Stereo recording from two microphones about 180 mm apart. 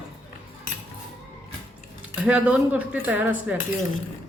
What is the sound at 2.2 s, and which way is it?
Speech, 5° right (ahead or behind).